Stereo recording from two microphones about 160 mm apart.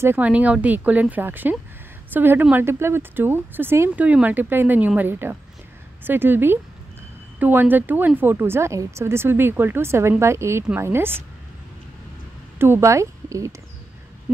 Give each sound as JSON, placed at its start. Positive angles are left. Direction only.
{"t": 0.0, "sound": "speech", "side_deg": -10}
{"t": 12.5, "sound": "a woman's voice", "side_deg": -15}